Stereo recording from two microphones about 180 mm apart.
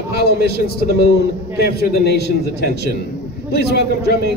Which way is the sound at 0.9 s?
65° left (ahead or behind).